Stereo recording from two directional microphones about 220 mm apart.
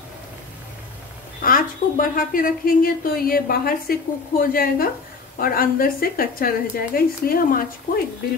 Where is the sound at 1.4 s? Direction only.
40° left (ahead or behind).